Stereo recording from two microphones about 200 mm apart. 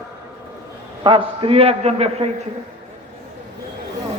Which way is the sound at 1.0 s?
25° right (ahead or behind).